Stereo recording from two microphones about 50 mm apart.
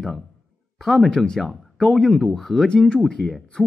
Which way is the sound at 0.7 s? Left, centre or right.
Centre.